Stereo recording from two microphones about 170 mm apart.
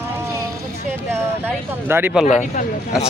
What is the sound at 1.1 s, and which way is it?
Speech, 15° right (ahead or behind).